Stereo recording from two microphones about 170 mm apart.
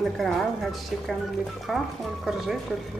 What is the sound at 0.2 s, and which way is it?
A woman's voice, centre (ahead or behind).